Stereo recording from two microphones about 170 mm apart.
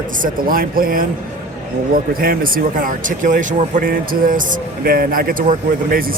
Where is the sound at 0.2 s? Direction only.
55° right (ahead or behind).